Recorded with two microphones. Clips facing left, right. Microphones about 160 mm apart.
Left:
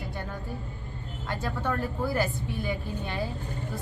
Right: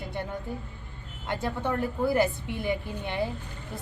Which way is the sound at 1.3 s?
20° right (ahead or behind).